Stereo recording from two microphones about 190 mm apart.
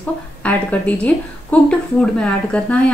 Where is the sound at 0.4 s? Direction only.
10° left (ahead or behind).